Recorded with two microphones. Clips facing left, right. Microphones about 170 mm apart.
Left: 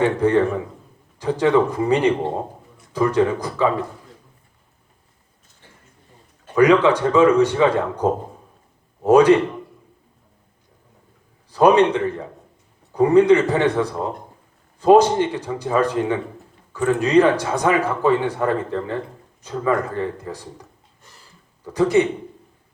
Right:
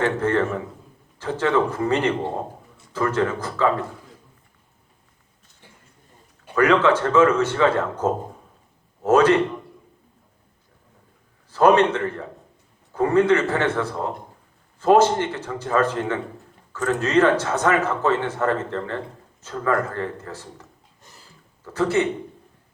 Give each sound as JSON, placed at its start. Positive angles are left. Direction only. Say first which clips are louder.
{"t": 0.0, "sound": "a man's voice", "louder": "left 4 dB", "side_deg": 15}
{"t": 6.5, "sound": "a man's voice", "louder": "left 3 dB", "side_deg": 15}
{"t": 11.5, "sound": "a man's voice", "louder": "left 2 dB", "side_deg": 15}